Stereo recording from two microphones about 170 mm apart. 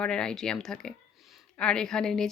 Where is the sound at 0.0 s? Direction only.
5° left (ahead or behind).